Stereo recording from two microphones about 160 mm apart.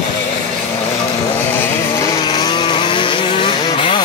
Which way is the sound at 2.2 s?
25° left (ahead or behind).